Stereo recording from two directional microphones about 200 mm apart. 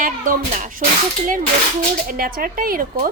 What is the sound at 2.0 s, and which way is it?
Speech, 45° right (ahead or behind).